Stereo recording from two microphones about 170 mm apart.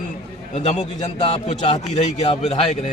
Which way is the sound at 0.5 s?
40° left (ahead or behind).